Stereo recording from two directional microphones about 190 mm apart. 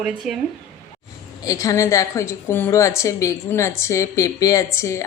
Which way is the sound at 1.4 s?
15° left (ahead or behind).